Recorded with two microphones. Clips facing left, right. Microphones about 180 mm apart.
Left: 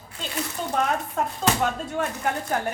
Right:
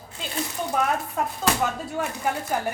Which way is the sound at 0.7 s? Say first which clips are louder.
Even; 5° right (ahead or behind).